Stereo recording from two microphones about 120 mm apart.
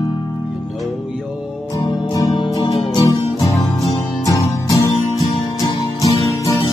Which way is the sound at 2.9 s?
30° left (ahead or behind).